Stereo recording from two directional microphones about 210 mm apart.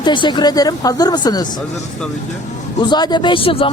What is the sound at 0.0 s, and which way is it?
Speech, 20° left (ahead or behind).